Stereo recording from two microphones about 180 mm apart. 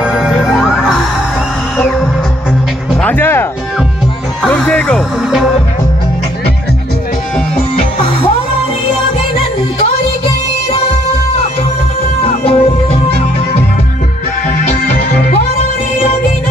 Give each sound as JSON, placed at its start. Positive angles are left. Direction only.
{"t": 0.0, "sound": "music", "side_deg": -5}
{"t": 12.3, "sound": "music", "side_deg": 35}